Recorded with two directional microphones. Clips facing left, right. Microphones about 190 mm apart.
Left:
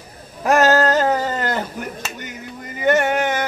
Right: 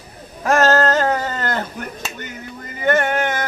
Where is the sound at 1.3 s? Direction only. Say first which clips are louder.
Left 1 dB; 10° left (ahead or behind).